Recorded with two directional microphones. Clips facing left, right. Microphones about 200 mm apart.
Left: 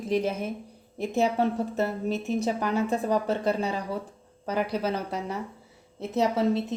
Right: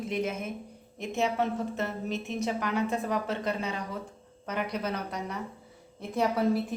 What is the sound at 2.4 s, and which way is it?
A woman's voice, 35° left (ahead or behind).